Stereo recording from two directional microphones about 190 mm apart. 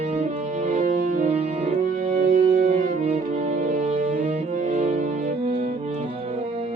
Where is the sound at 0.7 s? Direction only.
45° right (ahead or behind).